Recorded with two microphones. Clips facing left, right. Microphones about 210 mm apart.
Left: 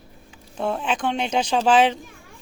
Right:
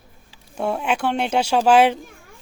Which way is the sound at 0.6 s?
10° right (ahead or behind).